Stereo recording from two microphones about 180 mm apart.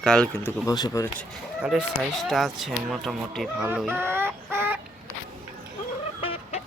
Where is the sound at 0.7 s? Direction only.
20° left (ahead or behind).